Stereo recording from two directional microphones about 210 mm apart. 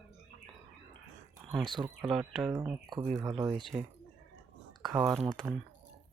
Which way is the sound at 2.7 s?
15° right (ahead or behind).